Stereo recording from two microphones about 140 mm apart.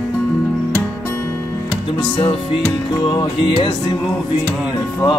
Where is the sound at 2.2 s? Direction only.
40° left (ahead or behind).